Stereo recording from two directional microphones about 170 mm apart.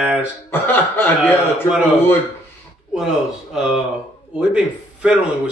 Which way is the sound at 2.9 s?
5° right (ahead or behind).